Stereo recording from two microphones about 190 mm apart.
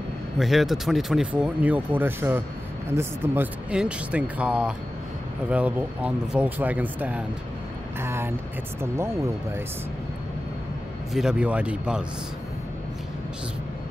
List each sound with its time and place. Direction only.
0.4 s speech: centre (ahead or behind)
11.1 s speech: 5° right (ahead or behind)